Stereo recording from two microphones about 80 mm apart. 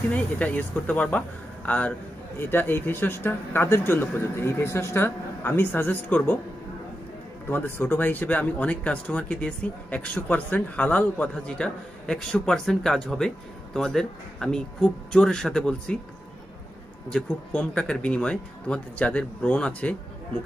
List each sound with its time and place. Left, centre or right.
0.1 s a man's voice: centre
7.4 s a man's voice: left
17.5 s speech: centre